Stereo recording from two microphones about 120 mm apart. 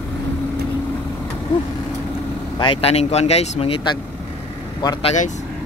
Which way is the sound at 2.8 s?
60° left (ahead or behind).